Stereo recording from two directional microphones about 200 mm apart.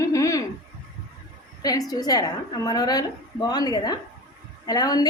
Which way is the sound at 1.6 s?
20° left (ahead or behind).